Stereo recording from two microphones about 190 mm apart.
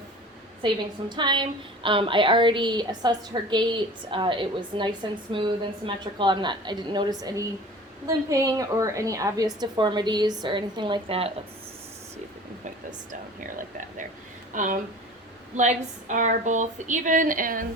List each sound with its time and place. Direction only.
1.1 s a woman's voice: 25° right (ahead or behind)
14.5 s speech: 40° right (ahead or behind)